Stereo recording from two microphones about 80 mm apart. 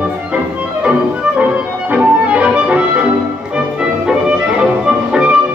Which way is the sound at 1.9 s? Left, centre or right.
Centre.